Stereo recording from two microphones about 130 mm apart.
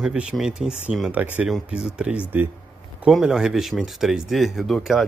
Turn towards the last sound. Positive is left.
turn(degrees=0)  # may be behind; listen again after turning